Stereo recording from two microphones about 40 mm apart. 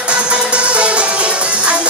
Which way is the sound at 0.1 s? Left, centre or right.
Right.